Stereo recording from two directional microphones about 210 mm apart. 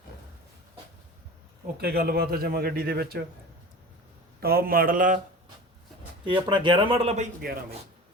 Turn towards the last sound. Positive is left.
turn(degrees=-45)  # may be behind; listen again after turning